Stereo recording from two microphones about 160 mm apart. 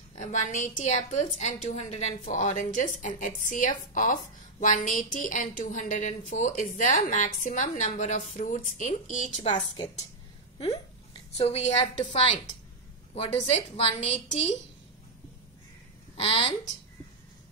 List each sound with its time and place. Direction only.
0.1 s a woman's voice: 50° left (ahead or behind)
11.3 s a woman's voice: 40° left (ahead or behind)
16.2 s a woman's voice: 35° left (ahead or behind)